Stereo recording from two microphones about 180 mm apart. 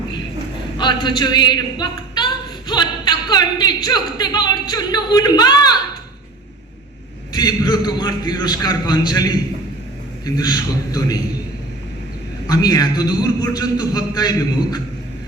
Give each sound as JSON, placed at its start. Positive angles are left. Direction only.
{"t": 0.8, "sound": "speech", "side_deg": 25}
{"t": 7.3, "sound": "speech", "side_deg": 20}
{"t": 12.5, "sound": "speech", "side_deg": 20}